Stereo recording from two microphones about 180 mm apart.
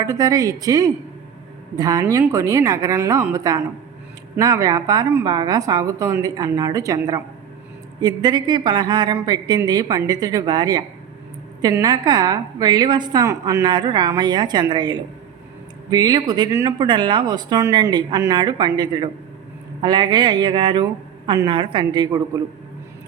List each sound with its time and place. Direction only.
0.0 s a woman's voice: 20° right (ahead or behind)